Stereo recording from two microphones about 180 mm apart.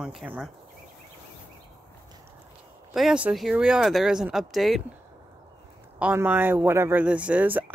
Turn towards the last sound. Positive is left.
turn(degrees=-10)  # may be behind; listen again after turning